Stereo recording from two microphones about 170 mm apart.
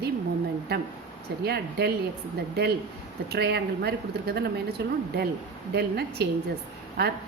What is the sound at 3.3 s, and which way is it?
A woman's voice, 70° right (ahead or behind).